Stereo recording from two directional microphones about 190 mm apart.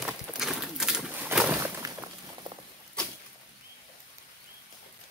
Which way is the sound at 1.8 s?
20° right (ahead or behind).